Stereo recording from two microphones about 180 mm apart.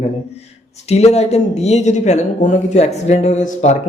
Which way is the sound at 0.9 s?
35° left (ahead or behind).